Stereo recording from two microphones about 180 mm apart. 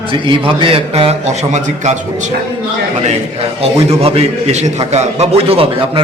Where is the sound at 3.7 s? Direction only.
35° right (ahead or behind).